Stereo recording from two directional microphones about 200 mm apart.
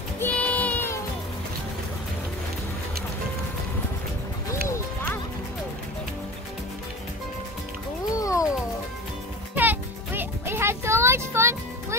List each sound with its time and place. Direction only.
0.2 s child singing: 5° left (ahead or behind)
4.6 s music: 10° left (ahead or behind)
8.2 s cat: 15° left (ahead or behind)
9.6 s music: 10° right (ahead or behind)